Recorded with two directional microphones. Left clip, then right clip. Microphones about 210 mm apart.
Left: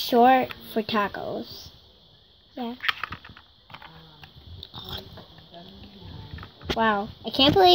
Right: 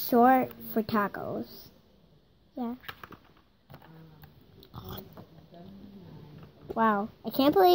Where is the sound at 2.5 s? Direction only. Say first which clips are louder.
Left 10 dB; centre (ahead or behind).